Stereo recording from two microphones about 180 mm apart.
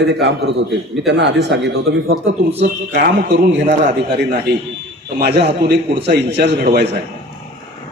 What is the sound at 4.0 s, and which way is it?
A man's voice, 65° right (ahead or behind).